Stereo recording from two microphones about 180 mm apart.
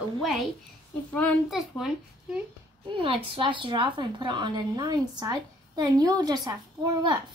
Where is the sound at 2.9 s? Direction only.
30° right (ahead or behind).